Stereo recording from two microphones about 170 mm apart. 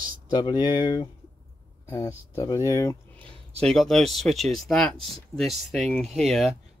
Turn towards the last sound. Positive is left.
turn(degrees=0)  # may be behind; listen again after turning